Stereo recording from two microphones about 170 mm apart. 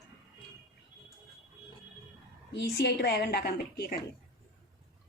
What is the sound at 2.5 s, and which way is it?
A woman's voice, 75° left (ahead or behind).